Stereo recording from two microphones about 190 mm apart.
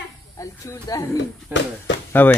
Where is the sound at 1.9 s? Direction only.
70° left (ahead or behind).